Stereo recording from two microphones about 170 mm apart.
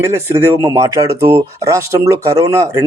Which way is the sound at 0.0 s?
15° right (ahead or behind).